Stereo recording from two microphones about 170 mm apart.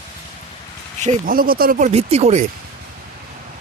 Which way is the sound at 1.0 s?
50° right (ahead or behind).